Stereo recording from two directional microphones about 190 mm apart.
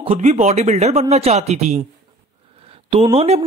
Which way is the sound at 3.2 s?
30° right (ahead or behind).